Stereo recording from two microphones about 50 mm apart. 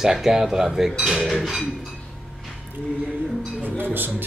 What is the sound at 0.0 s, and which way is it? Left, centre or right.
Speech, centre.